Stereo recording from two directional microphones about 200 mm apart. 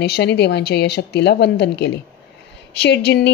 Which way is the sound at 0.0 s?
55° left (ahead or behind).